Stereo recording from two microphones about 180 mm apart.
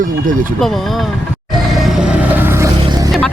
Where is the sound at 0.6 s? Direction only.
Centre (ahead or behind).